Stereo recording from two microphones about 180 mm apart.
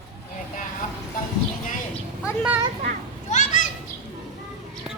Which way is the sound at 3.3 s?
45° left (ahead or behind).